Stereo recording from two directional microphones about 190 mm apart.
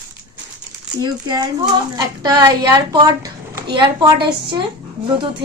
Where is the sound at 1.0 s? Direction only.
20° right (ahead or behind).